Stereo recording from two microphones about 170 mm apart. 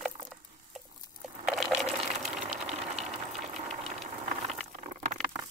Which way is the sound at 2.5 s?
40° right (ahead or behind).